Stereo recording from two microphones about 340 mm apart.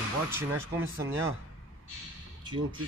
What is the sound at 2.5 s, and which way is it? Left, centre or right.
Speech, right.